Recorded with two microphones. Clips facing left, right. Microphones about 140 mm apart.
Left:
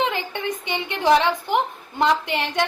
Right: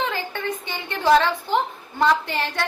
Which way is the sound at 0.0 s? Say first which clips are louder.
Left 2 dB; 20° left (ahead or behind).